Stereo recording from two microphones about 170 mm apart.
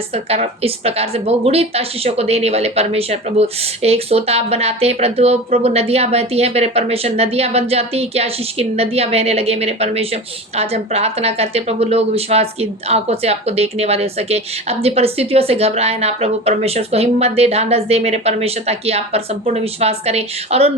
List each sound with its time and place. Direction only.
0.1 s speech: 35° right (ahead or behind)